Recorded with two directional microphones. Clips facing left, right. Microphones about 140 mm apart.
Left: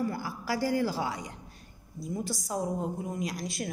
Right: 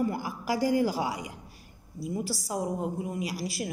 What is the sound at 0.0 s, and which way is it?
A man's voice, 15° right (ahead or behind).